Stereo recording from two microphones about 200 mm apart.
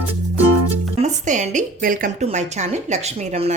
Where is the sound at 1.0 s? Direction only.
35° right (ahead or behind).